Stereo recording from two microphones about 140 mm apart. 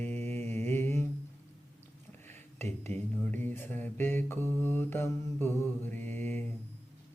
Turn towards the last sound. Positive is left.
turn(degrees=15)  # may be behind; listen again after turning